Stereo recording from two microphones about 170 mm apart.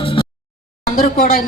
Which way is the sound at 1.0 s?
60° left (ahead or behind).